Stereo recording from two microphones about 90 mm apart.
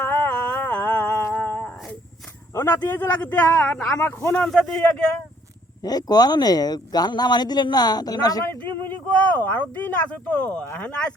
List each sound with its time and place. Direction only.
0.3 s music: 20° left (ahead or behind)
1.3 s dog: 20° left (ahead or behind)
2.6 s speech: 30° left (ahead or behind)
3.0 s speech: 20° left (ahead or behind)
4.0 s speech: 25° left (ahead or behind)
4.4 s speech: 5° left (ahead or behind)
5.8 s speech: 45° left (ahead or behind)
8.6 s a sound: 20° left (ahead or behind)
9.4 s speech: 20° left (ahead or behind)